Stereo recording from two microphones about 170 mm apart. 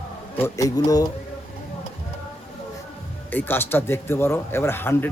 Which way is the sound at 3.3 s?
10° left (ahead or behind).